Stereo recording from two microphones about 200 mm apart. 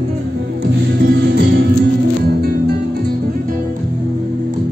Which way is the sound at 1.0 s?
55° right (ahead or behind).